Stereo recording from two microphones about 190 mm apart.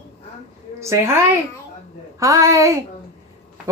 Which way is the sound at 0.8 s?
15° right (ahead or behind).